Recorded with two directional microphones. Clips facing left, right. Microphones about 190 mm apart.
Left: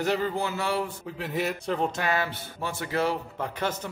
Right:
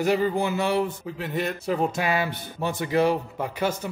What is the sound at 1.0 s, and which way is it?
Speech, centre (ahead or behind).